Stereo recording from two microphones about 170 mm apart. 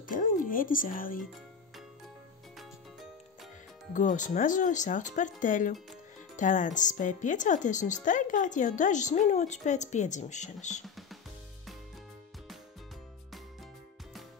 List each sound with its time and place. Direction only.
0.1 s speech: 50° left (ahead or behind)
3.9 s speech: 45° left (ahead or behind)